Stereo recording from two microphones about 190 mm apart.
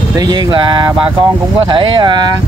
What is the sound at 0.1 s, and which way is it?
Speech, 20° right (ahead or behind).